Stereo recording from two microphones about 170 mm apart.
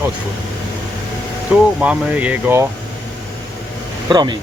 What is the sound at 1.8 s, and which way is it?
Speech, 10° right (ahead or behind).